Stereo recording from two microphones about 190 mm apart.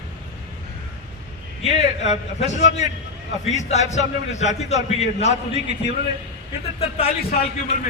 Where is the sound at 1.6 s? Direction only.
35° left (ahead or behind).